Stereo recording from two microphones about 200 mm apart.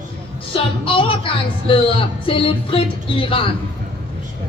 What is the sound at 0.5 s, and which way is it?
Speech, 25° left (ahead or behind).